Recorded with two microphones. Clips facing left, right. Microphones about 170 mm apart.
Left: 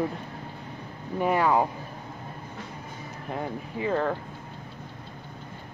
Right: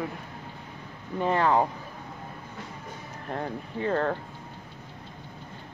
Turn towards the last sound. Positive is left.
turn(degrees=5)  # may be behind; listen again after turning